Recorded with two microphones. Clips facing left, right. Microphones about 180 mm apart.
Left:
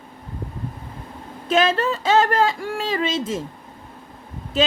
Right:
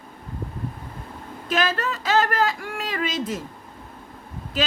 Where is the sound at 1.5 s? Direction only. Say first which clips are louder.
Left 5 dB; 25° left (ahead or behind).